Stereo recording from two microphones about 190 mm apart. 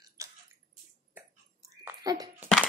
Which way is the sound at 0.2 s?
15° right (ahead or behind).